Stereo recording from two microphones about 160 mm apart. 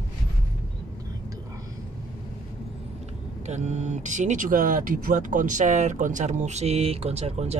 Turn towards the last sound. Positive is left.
turn(degrees=-40)  # may be behind; listen again after turning